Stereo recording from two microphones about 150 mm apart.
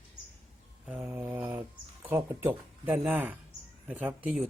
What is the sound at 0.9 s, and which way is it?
Mantra, 10° right (ahead or behind).